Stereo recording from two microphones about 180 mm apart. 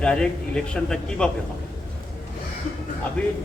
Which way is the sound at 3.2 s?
5° left (ahead or behind).